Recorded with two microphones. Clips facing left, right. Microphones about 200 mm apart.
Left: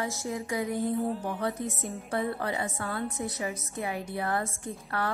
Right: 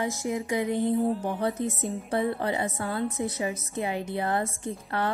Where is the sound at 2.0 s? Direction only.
30° right (ahead or behind).